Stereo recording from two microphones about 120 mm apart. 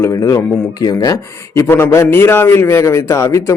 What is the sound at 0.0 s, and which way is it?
A man's voice, 25° left (ahead or behind).